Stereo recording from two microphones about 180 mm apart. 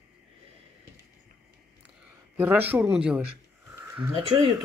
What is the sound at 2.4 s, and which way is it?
Speech, 10° right (ahead or behind).